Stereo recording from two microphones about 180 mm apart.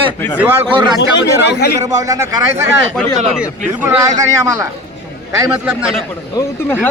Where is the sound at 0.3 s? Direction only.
10° right (ahead or behind).